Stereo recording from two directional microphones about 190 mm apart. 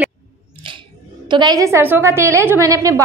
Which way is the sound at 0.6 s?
25° right (ahead or behind).